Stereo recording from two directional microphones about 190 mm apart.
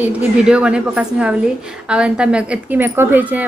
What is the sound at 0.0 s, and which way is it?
A woman's voice, 5° right (ahead or behind).